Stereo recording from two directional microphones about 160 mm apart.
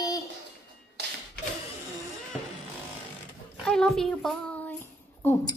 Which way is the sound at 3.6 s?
5° left (ahead or behind).